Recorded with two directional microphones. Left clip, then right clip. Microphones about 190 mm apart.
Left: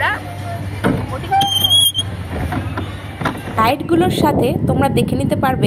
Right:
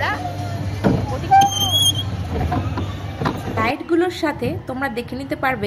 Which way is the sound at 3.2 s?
20° left (ahead or behind).